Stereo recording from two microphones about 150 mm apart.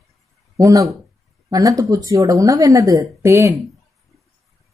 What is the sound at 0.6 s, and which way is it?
Speech, 20° right (ahead or behind).